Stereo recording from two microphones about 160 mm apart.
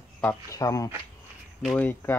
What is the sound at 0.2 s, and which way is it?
Speech, 15° left (ahead or behind).